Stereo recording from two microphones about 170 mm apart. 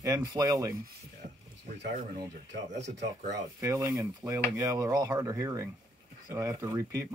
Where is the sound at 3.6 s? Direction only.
20° right (ahead or behind).